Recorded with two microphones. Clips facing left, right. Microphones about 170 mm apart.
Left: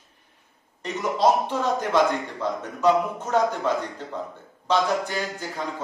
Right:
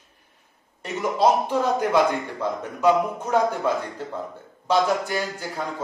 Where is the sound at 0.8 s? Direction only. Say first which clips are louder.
Right 1 dB; 10° right (ahead or behind).